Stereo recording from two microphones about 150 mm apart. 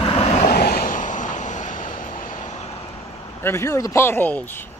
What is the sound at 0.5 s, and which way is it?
Vehicle, 80° left.